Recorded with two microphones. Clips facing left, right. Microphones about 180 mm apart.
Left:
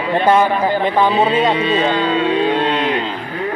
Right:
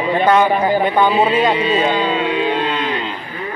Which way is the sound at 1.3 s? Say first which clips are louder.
Even; 30° left (ahead or behind).